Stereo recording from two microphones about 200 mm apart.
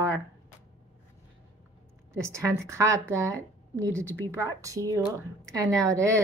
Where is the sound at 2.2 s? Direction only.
15° right (ahead or behind).